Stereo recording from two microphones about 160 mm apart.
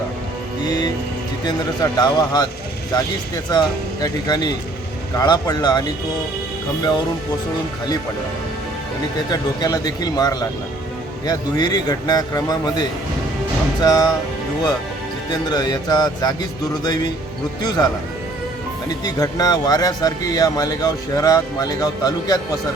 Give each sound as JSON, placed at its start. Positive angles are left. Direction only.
{"t": 0.6, "sound": "music", "side_deg": 25}
{"t": 1.5, "sound": "speech", "side_deg": 25}
{"t": 9.3, "sound": "speech", "side_deg": 25}
{"t": 13.8, "sound": "speech", "side_deg": 25}
{"t": 15.3, "sound": "speech", "side_deg": 25}
{"t": 18.9, "sound": "speech", "side_deg": 25}